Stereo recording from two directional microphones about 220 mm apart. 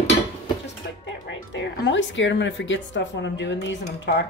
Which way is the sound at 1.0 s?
55° left (ahead or behind).